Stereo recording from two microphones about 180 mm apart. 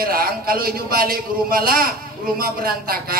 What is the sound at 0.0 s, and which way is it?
A man's voice, 55° right (ahead or behind).